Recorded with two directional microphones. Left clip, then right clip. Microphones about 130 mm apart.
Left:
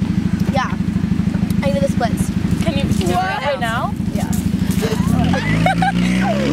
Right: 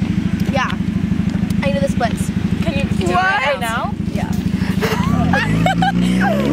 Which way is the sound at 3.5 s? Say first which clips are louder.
Even; 5° left (ahead or behind).